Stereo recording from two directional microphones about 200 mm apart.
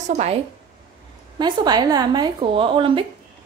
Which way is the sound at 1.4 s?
20° right (ahead or behind).